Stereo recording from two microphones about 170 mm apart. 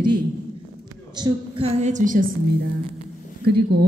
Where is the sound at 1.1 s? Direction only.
30° right (ahead or behind); by 2.2 s 50° right (ahead or behind).